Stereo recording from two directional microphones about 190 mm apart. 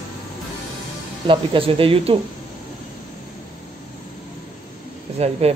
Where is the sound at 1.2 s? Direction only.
25° right (ahead or behind).